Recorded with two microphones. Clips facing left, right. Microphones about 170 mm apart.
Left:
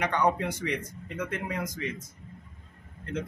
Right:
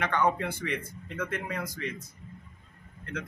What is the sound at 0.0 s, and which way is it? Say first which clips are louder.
A man's voice: left 1 dB; 15° left (ahead or behind).